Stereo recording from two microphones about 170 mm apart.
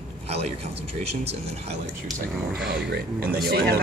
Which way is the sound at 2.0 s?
5° right (ahead or behind).